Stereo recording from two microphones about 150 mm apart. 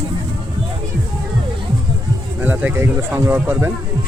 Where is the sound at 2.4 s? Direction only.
10° right (ahead or behind).